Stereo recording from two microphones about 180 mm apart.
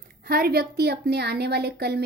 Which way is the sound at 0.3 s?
55° right (ahead or behind).